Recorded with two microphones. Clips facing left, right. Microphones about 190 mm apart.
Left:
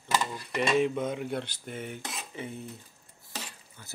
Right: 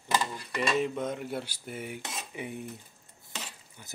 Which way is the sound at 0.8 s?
Centre (ahead or behind).